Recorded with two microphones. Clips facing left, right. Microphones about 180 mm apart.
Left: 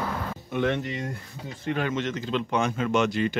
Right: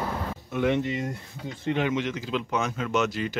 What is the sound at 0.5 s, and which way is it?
Speech, centre (ahead or behind).